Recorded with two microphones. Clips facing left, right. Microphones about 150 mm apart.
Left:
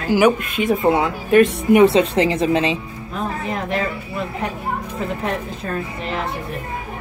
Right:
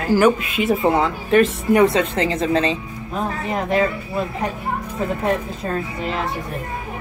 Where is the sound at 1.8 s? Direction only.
20° left (ahead or behind).